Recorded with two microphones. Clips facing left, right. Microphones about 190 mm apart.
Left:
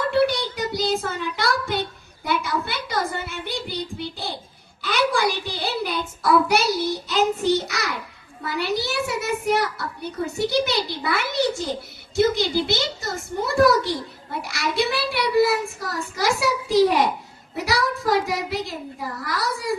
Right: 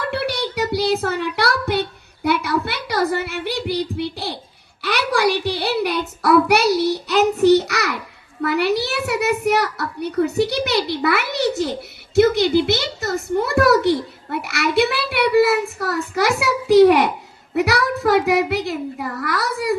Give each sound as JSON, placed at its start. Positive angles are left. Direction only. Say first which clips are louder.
{"t": 0.1, "sound": "child singing", "louder": "left 3 dB", "side_deg": -65}
{"t": 2.2, "sound": "a child's voice", "louder": "right 5 dB", "side_deg": -65}
{"t": 12.1, "sound": "a child's voice", "louder": "right 6 dB", "side_deg": -60}